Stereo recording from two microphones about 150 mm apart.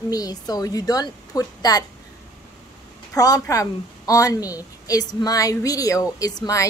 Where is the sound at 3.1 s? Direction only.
20° left (ahead or behind).